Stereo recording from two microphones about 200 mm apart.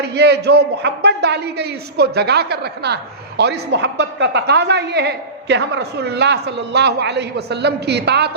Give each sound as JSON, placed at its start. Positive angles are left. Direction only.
{"t": 0.0, "sound": "a man's voice", "side_deg": -55}